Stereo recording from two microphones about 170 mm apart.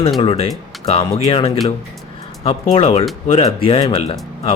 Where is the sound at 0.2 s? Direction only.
35° left (ahead or behind).